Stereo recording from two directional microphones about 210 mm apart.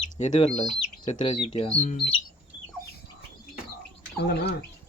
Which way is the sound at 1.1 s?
25° left (ahead or behind).